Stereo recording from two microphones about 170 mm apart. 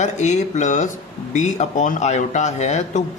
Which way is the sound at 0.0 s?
45° left (ahead or behind).